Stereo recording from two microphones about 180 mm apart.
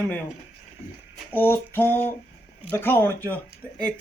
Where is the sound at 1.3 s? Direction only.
10° left (ahead or behind).